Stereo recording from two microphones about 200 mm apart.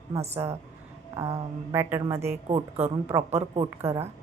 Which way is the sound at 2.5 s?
30° right (ahead or behind).